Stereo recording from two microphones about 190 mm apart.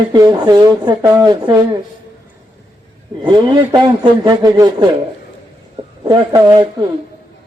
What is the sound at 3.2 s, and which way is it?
Speech, 25° right (ahead or behind).